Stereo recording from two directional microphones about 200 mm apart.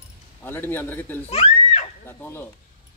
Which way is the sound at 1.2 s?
30° left (ahead or behind).